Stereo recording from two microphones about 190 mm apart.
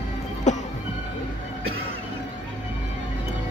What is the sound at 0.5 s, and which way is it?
Music, 40° left (ahead or behind).